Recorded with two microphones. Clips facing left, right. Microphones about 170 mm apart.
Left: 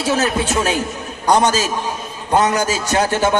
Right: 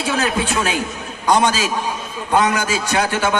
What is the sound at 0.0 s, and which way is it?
A man's voice, 40° left (ahead or behind).